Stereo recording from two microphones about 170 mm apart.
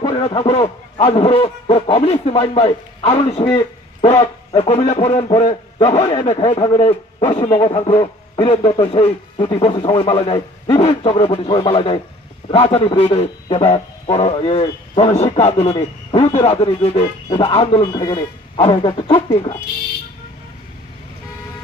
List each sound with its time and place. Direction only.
0.0 s a man's voice: 30° left (ahead or behind)
5.8 s a man's voice: 20° left (ahead or behind)